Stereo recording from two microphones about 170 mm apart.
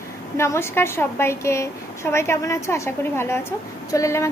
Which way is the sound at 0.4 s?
15° left (ahead or behind).